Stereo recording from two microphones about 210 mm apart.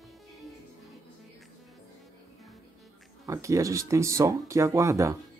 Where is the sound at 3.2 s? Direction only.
15° right (ahead or behind).